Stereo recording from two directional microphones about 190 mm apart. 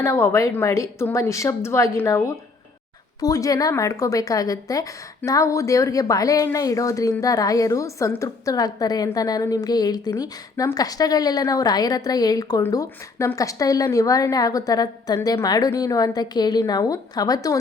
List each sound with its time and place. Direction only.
0.0 s a woman's voice: 15° left (ahead or behind)